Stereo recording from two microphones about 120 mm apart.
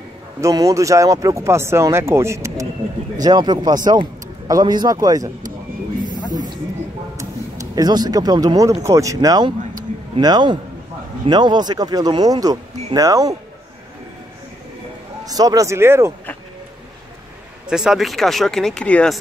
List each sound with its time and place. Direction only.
0.4 s speech: 25° right (ahead or behind)
6.3 s a sound: 35° right (ahead or behind)
7.7 s speech: 35° right (ahead or behind)
15.2 s speech: 30° right (ahead or behind)
17.6 s speech: 5° right (ahead or behind)